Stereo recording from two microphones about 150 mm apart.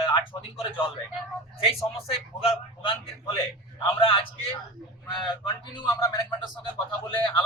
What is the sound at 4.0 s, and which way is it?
A man's voice, 40° left (ahead or behind).